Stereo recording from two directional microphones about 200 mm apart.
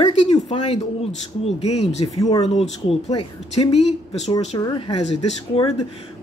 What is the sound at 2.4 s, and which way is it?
Speech, 35° left (ahead or behind).